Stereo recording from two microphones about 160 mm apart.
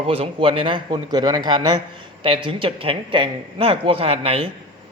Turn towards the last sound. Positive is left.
turn(degrees=-35)  # may be behind; listen again after turning